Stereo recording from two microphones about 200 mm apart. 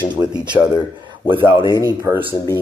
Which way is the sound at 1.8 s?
15° right (ahead or behind).